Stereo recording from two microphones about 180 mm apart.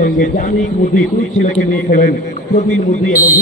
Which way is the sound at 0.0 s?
45° left (ahead or behind).